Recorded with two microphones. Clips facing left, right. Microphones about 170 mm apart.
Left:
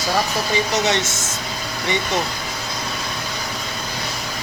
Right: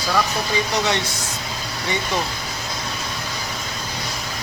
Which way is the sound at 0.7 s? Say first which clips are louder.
Left 2 dB; 20° left (ahead or behind).